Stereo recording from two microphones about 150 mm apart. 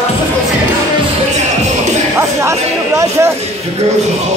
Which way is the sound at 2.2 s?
20° right (ahead or behind).